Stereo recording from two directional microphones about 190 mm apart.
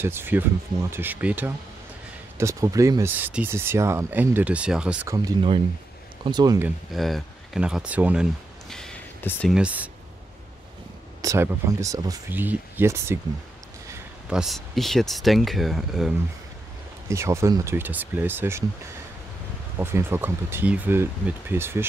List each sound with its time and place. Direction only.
0.0 s speech: 10° right (ahead or behind)
5.0 s speech: 20° right (ahead or behind)
6.9 s speech: centre (ahead or behind)
9.5 s speech: 5° right (ahead or behind)
11.1 s speech: 15° right (ahead or behind)
14.3 s speech: centre (ahead or behind)
17.1 s speech: 15° right (ahead or behind)
19.8 s speech: 10° right (ahead or behind)